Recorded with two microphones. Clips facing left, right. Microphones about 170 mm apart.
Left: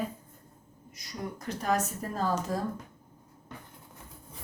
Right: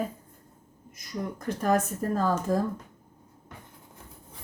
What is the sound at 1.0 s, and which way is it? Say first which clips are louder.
Speech: right 4 dB; 50° right (ahead or behind).